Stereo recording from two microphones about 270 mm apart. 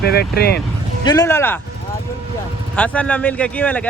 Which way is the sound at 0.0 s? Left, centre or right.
Left.